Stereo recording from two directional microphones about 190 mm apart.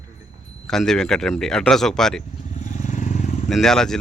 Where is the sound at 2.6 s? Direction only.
40° left (ahead or behind).